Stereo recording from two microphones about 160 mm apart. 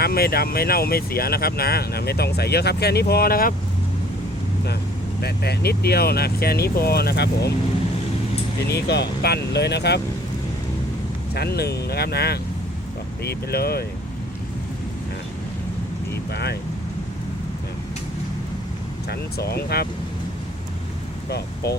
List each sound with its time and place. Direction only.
0.0 s speech: 70° left (ahead or behind)
5.2 s speech: 85° left
8.7 s speech: 90° left
11.3 s speech: 85° left
16.3 s speech: 90° left
19.0 s speech: 85° left
21.2 s speech: 90° left